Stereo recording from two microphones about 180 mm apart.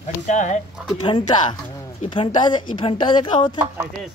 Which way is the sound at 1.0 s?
25° left (ahead or behind).